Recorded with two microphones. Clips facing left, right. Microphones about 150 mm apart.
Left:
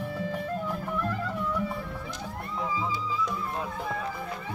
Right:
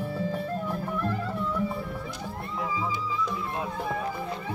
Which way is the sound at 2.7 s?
15° right (ahead or behind).